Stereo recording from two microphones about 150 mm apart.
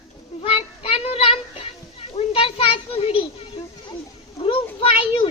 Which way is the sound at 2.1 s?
40° left (ahead or behind).